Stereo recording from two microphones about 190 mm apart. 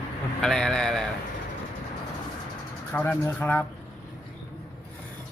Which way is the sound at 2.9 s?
10° left (ahead or behind).